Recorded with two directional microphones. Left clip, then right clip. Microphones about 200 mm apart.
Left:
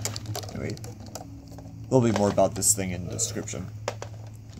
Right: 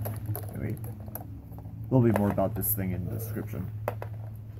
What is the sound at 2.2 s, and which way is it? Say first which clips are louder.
Speech: left 6 dB; 20° left (ahead or behind).